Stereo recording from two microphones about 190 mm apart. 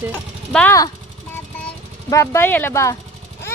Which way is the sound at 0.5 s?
15° left (ahead or behind).